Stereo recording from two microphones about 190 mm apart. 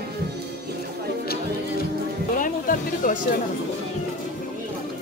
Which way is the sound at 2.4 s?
45° left (ahead or behind).